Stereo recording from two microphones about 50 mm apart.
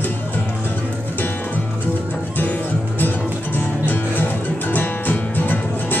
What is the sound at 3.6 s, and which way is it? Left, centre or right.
Music, left.